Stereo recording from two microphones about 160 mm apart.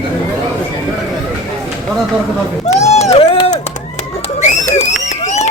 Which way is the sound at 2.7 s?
40° left (ahead or behind).